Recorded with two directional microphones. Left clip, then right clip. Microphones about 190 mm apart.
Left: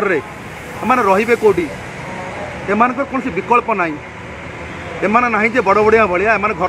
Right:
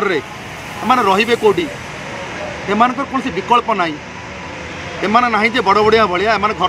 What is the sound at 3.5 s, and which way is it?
Speech, 5° right (ahead or behind).